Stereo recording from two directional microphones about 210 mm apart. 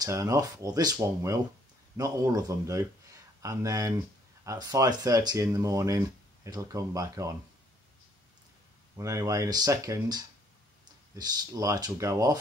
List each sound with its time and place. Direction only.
0.0 s speech: 15° right (ahead or behind)
8.9 s speech: 15° right (ahead or behind)